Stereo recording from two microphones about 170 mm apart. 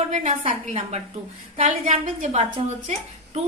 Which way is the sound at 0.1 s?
45° right (ahead or behind).